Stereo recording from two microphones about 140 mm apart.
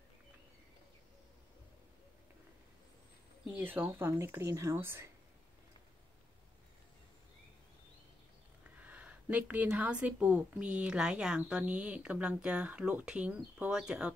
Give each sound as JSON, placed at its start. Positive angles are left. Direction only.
{"t": 3.4, "sound": "a woman's voice", "side_deg": -15}
{"t": 8.6, "sound": "a woman's voice", "side_deg": -10}